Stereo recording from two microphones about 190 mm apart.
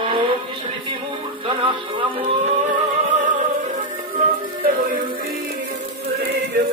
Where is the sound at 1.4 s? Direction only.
25° right (ahead or behind).